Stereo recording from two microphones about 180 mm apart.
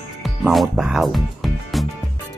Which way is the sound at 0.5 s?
Centre (ahead or behind).